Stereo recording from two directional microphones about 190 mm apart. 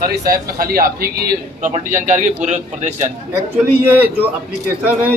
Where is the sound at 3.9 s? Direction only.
10° right (ahead or behind).